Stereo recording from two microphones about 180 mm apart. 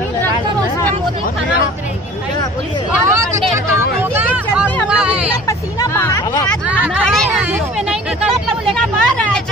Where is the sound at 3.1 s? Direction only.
15° right (ahead or behind).